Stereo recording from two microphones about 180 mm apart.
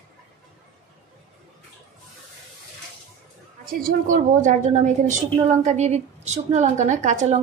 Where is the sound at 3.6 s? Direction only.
50° right (ahead or behind).